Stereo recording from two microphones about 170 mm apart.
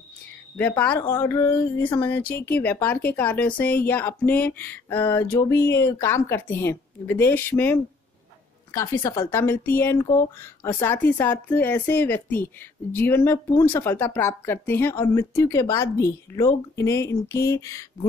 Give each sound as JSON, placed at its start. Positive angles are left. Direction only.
{"t": 0.6, "sound": "a woman's voice", "side_deg": 10}